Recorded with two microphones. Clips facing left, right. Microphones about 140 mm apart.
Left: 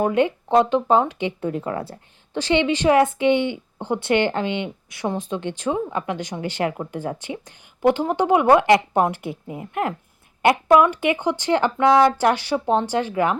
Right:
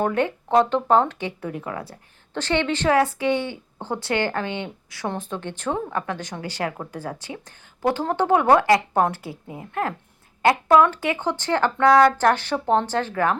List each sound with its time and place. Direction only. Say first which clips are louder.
0.0 s a woman's voice: left 3 dB; 15° left (ahead or behind)
1.4 s speech: left 5 dB; 25° left (ahead or behind)
2.3 s a woman's voice: left 3 dB; 15° left (ahead or behind)